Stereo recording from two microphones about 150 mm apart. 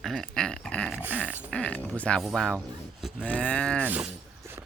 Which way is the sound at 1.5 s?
10° left (ahead or behind).